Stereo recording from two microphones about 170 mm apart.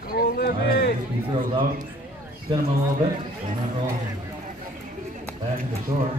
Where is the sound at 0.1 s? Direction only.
65° left (ahead or behind).